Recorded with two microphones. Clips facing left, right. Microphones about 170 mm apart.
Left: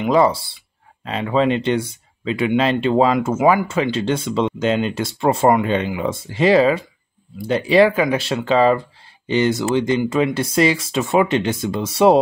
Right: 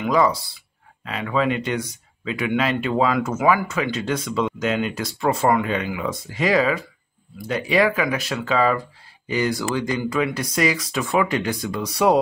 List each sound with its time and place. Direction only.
0.0 s speech: 30° left (ahead or behind)